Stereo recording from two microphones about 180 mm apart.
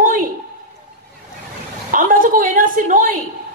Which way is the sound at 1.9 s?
50° right (ahead or behind).